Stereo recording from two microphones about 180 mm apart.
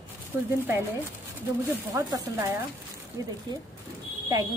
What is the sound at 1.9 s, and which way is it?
A woman's voice, 20° right (ahead or behind).